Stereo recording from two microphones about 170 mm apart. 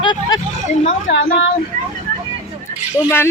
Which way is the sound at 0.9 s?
55° left (ahead or behind).